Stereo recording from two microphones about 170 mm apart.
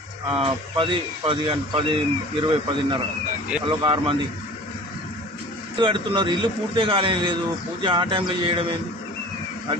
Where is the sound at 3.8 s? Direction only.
25° right (ahead or behind).